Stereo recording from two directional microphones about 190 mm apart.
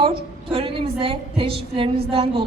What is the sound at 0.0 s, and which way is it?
A woman's voice, 25° right (ahead or behind).